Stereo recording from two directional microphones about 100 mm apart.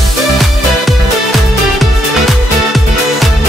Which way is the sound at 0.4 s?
Centre (ahead or behind).